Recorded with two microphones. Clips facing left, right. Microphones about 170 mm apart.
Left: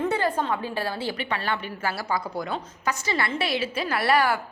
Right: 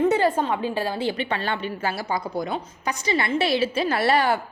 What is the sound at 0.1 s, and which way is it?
A woman's voice, 20° right (ahead or behind).